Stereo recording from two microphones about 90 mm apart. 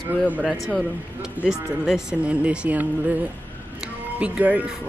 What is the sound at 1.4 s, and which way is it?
Speech, 5° right (ahead or behind).